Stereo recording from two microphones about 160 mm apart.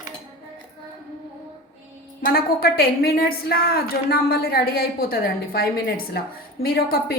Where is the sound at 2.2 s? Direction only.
70° left (ahead or behind).